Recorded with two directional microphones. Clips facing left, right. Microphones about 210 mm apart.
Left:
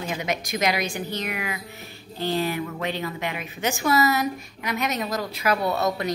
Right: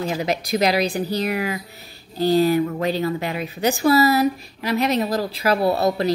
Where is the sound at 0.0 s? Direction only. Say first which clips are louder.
Right 5 dB; 35° right (ahead or behind).